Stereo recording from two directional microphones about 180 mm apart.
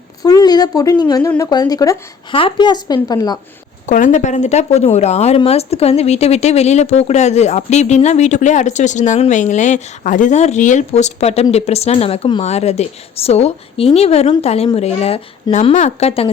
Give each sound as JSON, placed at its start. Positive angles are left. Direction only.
{"t": 0.2, "sound": "a woman's voice", "side_deg": 20}
{"t": 3.8, "sound": "speech", "side_deg": 45}